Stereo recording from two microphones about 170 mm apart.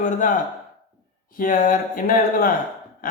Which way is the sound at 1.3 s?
55° left (ahead or behind).